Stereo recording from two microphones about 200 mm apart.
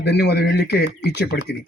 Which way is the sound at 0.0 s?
55° left (ahead or behind).